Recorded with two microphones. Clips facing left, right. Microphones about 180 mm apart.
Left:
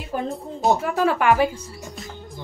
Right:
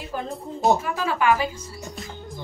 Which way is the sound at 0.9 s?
60° left (ahead or behind).